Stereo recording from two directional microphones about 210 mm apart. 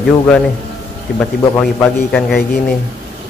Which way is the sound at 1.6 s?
5° left (ahead or behind).